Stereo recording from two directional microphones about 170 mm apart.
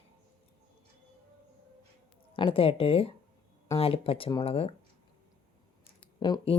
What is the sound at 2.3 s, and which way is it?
Speech, 30° left (ahead or behind).